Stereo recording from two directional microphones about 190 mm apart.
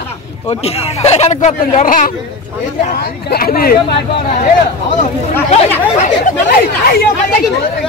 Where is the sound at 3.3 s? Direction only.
50° left (ahead or behind).